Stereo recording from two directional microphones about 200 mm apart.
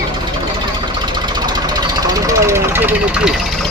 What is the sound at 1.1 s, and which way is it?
Vehicle, 20° right (ahead or behind).